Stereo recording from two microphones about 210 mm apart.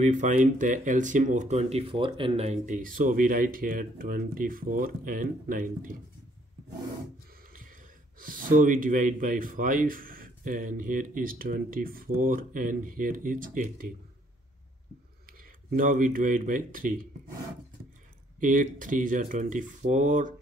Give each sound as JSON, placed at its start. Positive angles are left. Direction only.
{"t": 0.0, "sound": "speech", "side_deg": -35}
{"t": 8.2, "sound": "speech", "side_deg": -40}
{"t": 15.7, "sound": "speech", "side_deg": -40}
{"t": 18.4, "sound": "speech", "side_deg": -40}